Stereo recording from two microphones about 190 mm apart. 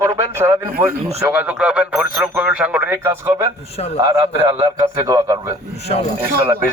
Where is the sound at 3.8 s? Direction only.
35° left (ahead or behind).